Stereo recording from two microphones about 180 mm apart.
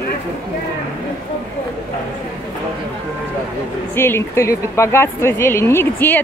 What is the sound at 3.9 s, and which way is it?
Speech, 15° left (ahead or behind).